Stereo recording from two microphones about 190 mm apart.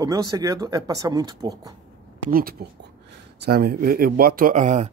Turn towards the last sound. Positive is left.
turn(degrees=-40)  # may be behind; listen again after turning